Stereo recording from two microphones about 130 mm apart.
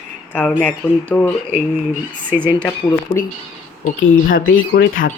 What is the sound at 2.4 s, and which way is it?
Speech, 35° left (ahead or behind).